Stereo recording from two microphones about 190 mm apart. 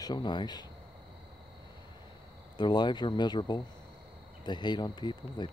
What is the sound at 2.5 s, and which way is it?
Speech, 25° left (ahead or behind).